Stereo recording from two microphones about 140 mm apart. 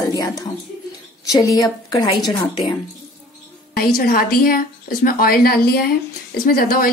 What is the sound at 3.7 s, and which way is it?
A woman's voice, 90° left.